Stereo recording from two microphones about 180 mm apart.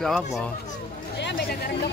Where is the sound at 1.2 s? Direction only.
65° left (ahead or behind).